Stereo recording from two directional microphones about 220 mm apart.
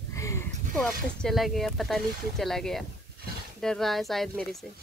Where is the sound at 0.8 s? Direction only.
Centre (ahead or behind).